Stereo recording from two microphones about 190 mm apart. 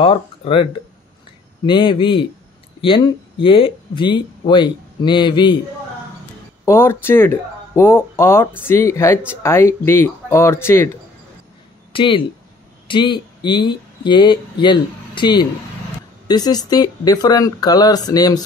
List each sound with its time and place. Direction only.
0.0 s speech: 25° left (ahead or behind)
1.7 s speech: 25° left (ahead or behind)
6.6 s speech: 15° left (ahead or behind)
11.9 s speech: 25° left (ahead or behind)